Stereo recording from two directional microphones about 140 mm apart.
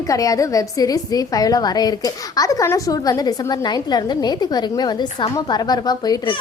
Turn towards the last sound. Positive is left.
turn(degrees=30)  # may be behind; listen again after turning